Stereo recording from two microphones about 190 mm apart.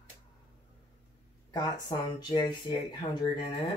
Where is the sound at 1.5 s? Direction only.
20° left (ahead or behind).